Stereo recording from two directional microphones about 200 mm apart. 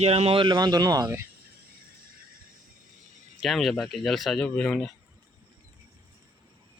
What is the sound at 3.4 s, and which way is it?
Speech, centre (ahead or behind).